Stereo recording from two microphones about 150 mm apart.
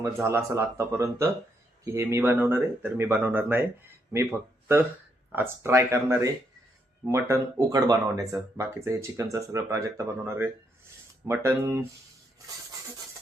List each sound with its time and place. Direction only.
0.0 s speech: 15° right (ahead or behind)